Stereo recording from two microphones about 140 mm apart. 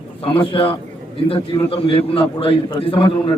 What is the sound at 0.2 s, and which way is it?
A man's voice, 40° left (ahead or behind).